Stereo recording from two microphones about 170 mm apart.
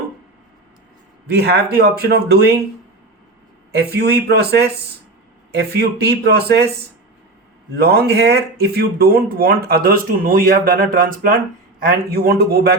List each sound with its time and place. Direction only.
1.3 s speech: 70° right (ahead or behind)
3.7 s speech: 75° right (ahead or behind)
7.8 s speech: 70° right (ahead or behind)